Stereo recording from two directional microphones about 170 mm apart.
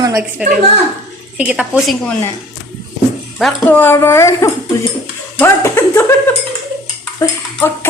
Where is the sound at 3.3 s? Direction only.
5° left (ahead or behind).